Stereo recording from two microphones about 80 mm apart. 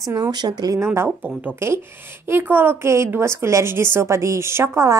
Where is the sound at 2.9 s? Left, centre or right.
Right.